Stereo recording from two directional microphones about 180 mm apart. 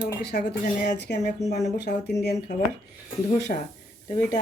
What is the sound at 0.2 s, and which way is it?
Dishes, 65° left (ahead or behind).